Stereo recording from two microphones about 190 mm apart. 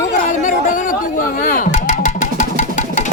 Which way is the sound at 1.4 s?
45° left (ahead or behind).